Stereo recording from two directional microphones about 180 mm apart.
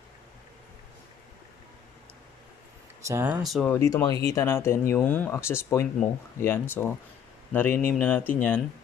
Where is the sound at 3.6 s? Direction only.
15° left (ahead or behind).